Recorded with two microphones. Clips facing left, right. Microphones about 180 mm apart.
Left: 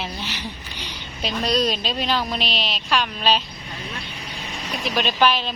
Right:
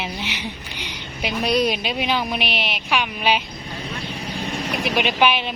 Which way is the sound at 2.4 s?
60° right (ahead or behind).